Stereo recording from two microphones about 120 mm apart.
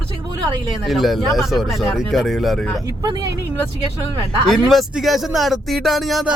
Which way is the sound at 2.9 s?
35° right (ahead or behind).